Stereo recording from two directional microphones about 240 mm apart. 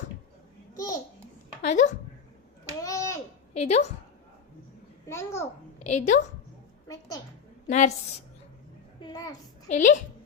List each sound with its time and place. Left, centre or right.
0.8 s babbling: centre
1.6 s a woman's voice: left
2.6 s a sound: centre
3.5 s a woman's voice: left
5.0 s a child's voice: centre
5.8 s a woman's voice: left
7.7 s a woman's voice: left
9.0 s a child's voice: centre
9.7 s speech: left